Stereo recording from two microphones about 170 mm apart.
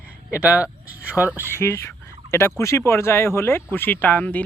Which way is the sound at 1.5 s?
15° left (ahead or behind).